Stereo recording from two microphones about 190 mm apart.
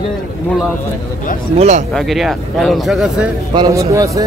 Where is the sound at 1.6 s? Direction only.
35° right (ahead or behind).